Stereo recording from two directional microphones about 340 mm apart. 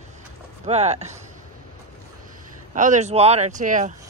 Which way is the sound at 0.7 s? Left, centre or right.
Centre.